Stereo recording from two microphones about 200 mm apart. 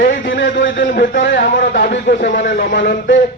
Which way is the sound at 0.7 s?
50° left (ahead or behind).